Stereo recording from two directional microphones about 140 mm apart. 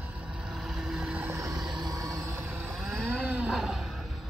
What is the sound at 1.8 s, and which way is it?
Vehicle, 25° right (ahead or behind).